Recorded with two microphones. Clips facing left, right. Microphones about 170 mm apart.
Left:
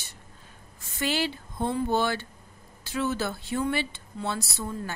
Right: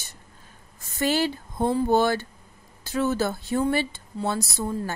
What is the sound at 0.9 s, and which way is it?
Speech, 45° right (ahead or behind).